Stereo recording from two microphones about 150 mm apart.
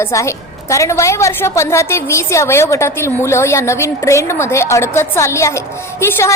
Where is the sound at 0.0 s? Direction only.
20° left (ahead or behind).